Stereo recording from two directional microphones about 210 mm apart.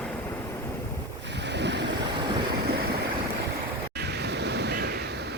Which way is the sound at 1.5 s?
55° right (ahead or behind).